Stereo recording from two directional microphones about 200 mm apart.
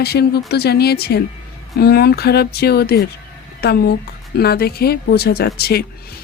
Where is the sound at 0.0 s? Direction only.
50° left (ahead or behind).